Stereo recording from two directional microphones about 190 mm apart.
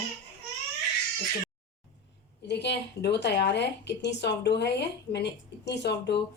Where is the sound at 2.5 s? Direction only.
65° left (ahead or behind).